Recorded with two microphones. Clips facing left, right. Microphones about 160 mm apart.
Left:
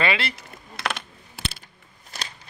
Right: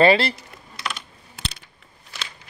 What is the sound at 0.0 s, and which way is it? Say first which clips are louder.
Speech: right 9 dB; 35° right (ahead or behind).